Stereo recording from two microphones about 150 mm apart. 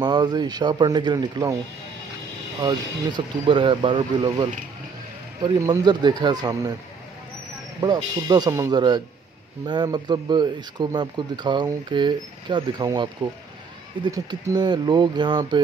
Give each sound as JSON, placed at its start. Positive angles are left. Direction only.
{"t": 0.0, "sound": "speech", "side_deg": -30}
{"t": 2.6, "sound": "speech", "side_deg": -30}
{"t": 7.8, "sound": "speech", "side_deg": -25}